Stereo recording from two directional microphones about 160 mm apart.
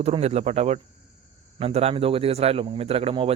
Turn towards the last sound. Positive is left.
turn(degrees=-35)  # may be behind; listen again after turning